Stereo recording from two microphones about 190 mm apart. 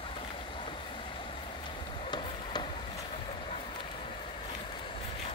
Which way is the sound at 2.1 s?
25° left (ahead or behind).